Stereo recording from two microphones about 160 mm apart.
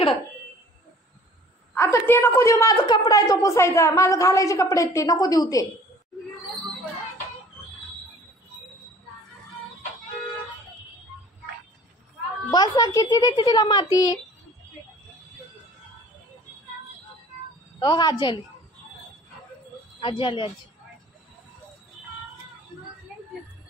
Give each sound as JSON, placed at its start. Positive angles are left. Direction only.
{"t": 1.8, "sound": "a woman's voice", "side_deg": 15}
{"t": 12.4, "sound": "a woman's voice", "side_deg": 25}
{"t": 17.7, "sound": "a woman's voice", "side_deg": 25}
{"t": 20.0, "sound": "speech", "side_deg": 30}